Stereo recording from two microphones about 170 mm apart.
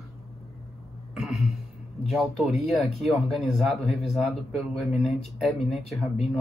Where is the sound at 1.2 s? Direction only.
Centre (ahead or behind).